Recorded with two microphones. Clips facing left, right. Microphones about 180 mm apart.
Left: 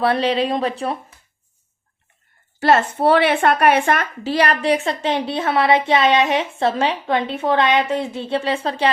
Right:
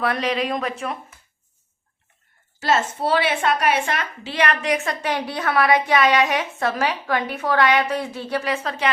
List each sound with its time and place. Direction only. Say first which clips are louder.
0.0 s speech: left 5 dB; 30° left (ahead or behind)
2.6 s speech: left 5 dB; 60° left (ahead or behind); by 8.9 s 30° left (ahead or behind)